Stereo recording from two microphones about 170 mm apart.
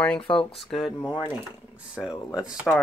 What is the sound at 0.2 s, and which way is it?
Speech, 30° left (ahead or behind).